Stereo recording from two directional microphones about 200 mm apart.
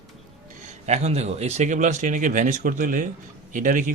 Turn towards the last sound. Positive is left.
turn(degrees=-40)  # may be behind; listen again after turning